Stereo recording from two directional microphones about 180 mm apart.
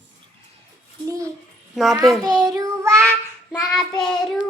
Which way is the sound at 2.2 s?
20° right (ahead or behind).